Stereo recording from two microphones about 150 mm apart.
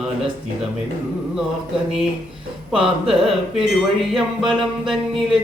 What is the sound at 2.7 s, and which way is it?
Speech, 5° right (ahead or behind).